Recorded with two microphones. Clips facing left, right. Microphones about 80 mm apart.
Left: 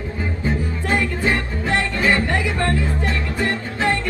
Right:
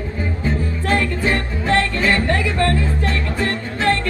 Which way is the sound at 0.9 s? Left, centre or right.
Centre.